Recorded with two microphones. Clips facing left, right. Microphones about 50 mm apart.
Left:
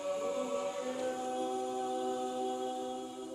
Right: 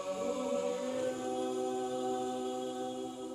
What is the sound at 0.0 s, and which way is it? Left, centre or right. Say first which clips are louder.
Choir: even; centre.